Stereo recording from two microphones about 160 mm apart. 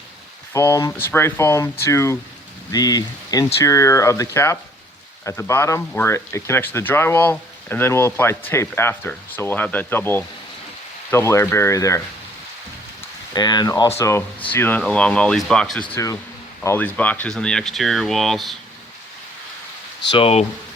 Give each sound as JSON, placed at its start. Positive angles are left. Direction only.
{"t": 0.5, "sound": "speech", "side_deg": 20}
{"t": 13.3, "sound": "speech", "side_deg": 25}
{"t": 15.9, "sound": "speech", "side_deg": 20}
{"t": 20.1, "sound": "speech", "side_deg": 35}